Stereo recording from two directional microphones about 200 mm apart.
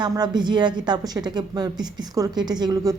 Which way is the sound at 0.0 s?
20° right (ahead or behind).